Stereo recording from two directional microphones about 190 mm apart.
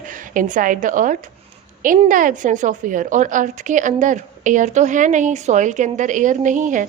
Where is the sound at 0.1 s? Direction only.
45° right (ahead or behind).